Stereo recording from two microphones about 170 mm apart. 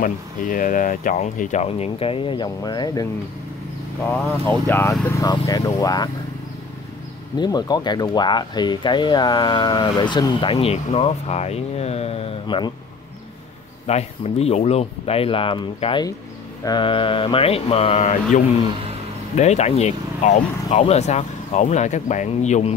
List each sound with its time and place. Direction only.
0.0 s speech: 50° left (ahead or behind); by 3.1 s 25° left (ahead or behind)
4.1 s speech: 15° left (ahead or behind)
7.3 s speech: 25° left (ahead or behind)
13.8 s speech: 40° left (ahead or behind)